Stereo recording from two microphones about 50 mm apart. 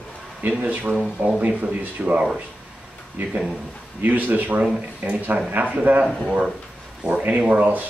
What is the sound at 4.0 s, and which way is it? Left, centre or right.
Speech, right.